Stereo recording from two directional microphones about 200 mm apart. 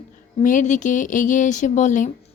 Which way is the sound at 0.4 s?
40° left (ahead or behind).